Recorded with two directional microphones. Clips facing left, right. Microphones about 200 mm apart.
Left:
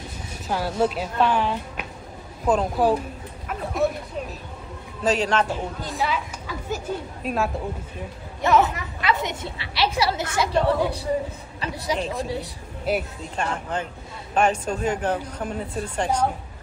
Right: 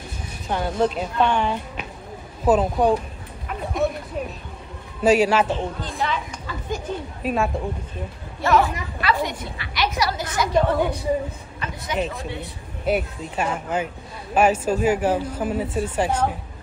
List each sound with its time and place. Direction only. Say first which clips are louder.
0.5 s speech: right 1 dB; 5° left (ahead or behind)
3.4 s a sound: even; centre (ahead or behind)
5.0 s speech: right 5 dB; 10° right (ahead or behind)
5.5 s speech: right 3 dB; 5° left (ahead or behind)
8.4 s a woman's voice: even; 20° left (ahead or behind)
12.0 s speech: even; centre (ahead or behind)